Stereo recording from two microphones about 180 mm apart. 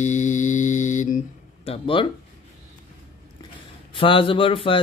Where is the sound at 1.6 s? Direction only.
30° left (ahead or behind).